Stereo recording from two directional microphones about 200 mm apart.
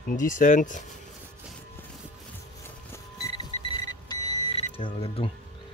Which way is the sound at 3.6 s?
20° left (ahead or behind).